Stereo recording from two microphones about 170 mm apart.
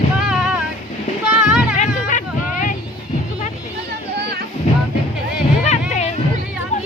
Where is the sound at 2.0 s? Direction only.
50° left (ahead or behind).